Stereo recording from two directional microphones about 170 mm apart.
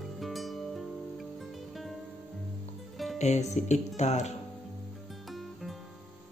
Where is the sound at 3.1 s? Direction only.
40° left (ahead or behind).